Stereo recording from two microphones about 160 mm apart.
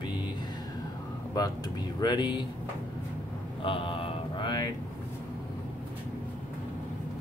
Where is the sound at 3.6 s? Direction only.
35° left (ahead or behind).